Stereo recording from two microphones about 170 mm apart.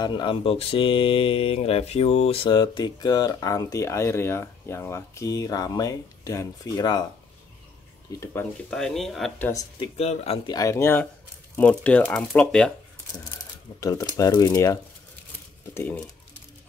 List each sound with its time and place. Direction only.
0.0 s speech: 25° left (ahead or behind)
8.2 s speech: 15° left (ahead or behind)
9.5 s speech: 20° left (ahead or behind)
9.9 s speech: 35° left (ahead or behind)
10.5 s speech: 20° left (ahead or behind); by 12.7 s 5° left (ahead or behind)
13.7 s speech: 20° left (ahead or behind)